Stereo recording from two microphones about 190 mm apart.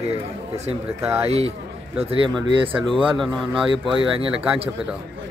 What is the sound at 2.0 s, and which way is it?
Speech, 30° right (ahead or behind).